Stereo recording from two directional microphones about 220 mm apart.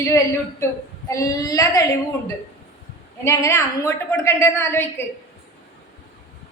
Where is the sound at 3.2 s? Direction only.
15° left (ahead or behind).